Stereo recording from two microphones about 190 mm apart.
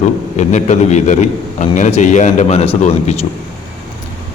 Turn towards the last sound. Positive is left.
turn(degrees=35)  # may be behind; listen again after turning